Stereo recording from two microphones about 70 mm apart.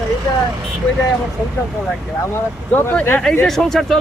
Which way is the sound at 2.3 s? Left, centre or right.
Left.